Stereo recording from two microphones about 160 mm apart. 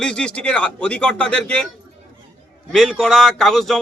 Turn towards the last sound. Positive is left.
turn(degrees=0)  # may be behind; listen again after turning